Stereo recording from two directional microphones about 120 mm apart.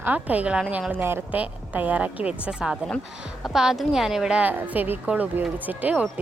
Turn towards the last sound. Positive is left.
turn(degrees=-15)  # may be behind; listen again after turning